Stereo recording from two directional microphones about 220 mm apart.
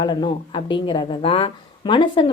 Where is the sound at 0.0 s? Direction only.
20° left (ahead or behind).